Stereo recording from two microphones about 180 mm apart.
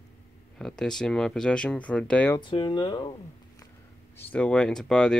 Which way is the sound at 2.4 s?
25° left (ahead or behind).